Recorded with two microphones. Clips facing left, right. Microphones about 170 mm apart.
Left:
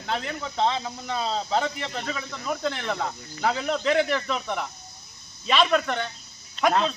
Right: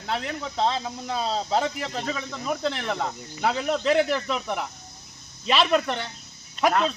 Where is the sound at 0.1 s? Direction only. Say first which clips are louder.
Even; centre (ahead or behind).